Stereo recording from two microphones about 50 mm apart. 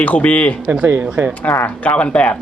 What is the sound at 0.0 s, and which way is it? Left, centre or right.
A man's voice, left.